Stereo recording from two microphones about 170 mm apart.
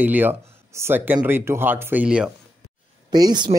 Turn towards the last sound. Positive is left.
turn(degrees=-25)  # may be behind; listen again after turning